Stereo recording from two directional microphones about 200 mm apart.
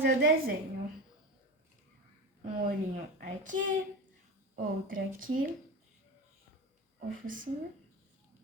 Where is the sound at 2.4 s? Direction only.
40° right (ahead or behind).